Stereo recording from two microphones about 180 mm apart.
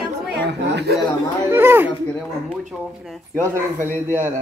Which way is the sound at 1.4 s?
10° right (ahead or behind).